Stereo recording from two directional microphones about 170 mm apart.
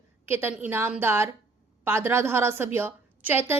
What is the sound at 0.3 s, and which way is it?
A woman's voice, 15° right (ahead or behind).